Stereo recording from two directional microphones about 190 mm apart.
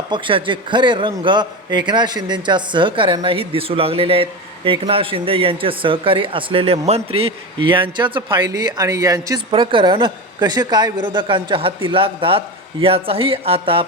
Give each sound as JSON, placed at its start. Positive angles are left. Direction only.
{"t": 0.1, "sound": "a man's voice", "side_deg": -25}